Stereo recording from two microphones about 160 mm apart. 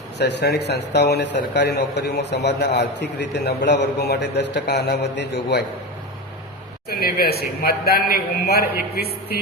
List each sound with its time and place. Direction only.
0.2 s a man's voice: 90° left
6.9 s a man's voice: 75° left (ahead or behind)